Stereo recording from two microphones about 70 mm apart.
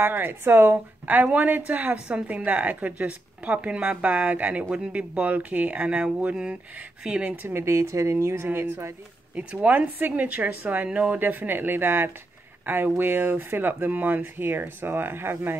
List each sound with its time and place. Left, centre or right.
0.0 s speech: right
7.4 s speech: right
9.3 s speech: centre; by 15.5 s right